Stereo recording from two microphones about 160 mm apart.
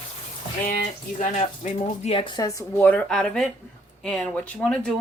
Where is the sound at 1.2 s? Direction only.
45° left (ahead or behind).